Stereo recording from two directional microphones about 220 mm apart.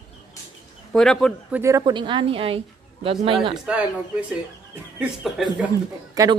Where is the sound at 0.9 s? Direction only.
Centre (ahead or behind).